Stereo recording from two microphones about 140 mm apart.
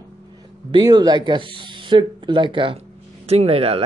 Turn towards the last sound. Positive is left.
turn(degrees=-45)  # may be behind; listen again after turning